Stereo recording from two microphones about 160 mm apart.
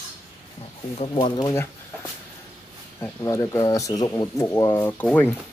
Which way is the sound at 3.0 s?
20° left (ahead or behind).